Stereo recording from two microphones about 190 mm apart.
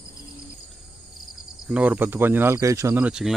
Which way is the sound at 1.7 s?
10° right (ahead or behind).